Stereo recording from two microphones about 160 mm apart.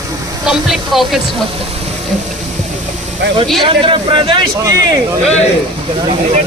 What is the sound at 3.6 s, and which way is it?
Speech, 30° right (ahead or behind).